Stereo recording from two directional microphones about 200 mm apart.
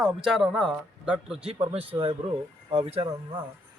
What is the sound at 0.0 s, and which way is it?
Speech, 5° right (ahead or behind).